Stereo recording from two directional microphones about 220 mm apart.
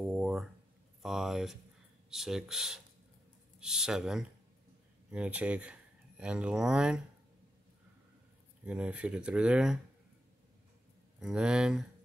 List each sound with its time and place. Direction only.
0.0 s a sound: 5° right (ahead or behind)
1.0 s speech: centre (ahead or behind)
8.6 s speech: 5° right (ahead or behind)
11.1 s speech: 5° right (ahead or behind)